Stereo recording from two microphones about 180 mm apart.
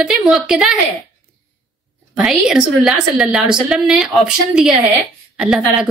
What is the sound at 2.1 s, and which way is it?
A woman's voice, 5° right (ahead or behind).